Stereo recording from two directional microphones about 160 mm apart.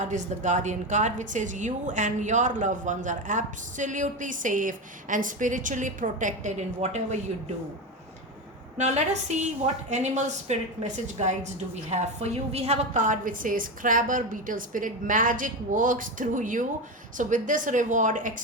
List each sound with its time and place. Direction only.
0.0 s a woman's voice: 50° right (ahead or behind)
8.8 s a woman's voice: 45° right (ahead or behind)